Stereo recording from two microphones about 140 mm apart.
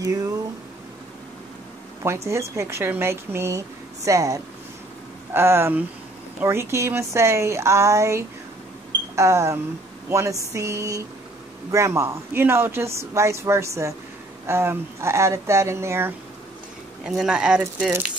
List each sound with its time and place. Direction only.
0.0 s speech: 25° right (ahead or behind)
2.0 s speech: 20° right (ahead or behind)
17.0 s speech: 5° right (ahead or behind)